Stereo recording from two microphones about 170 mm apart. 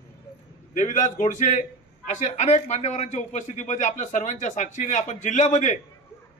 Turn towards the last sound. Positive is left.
turn(degrees=45)  # may be behind; listen again after turning